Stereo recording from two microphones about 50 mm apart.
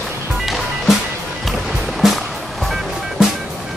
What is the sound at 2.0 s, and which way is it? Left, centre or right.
Music, centre.